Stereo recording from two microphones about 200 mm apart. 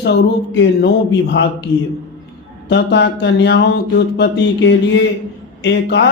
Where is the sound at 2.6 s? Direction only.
60° left (ahead or behind).